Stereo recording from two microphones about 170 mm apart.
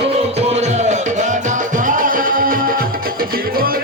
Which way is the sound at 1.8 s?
50° right (ahead or behind).